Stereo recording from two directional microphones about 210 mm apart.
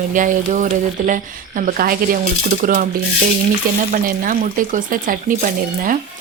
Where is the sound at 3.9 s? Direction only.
40° right (ahead or behind).